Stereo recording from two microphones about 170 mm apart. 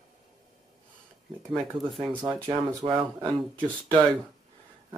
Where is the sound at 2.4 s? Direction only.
30° right (ahead or behind).